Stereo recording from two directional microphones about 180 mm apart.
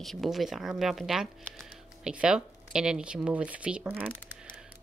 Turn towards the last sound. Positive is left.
turn(degrees=-10)  # may be behind; listen again after turning